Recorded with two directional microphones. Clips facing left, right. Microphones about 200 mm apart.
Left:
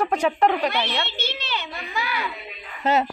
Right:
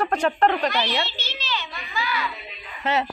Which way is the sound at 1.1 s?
60° left (ahead or behind).